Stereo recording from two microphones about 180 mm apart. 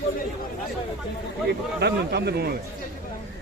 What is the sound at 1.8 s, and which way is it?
Speech, 65° right (ahead or behind).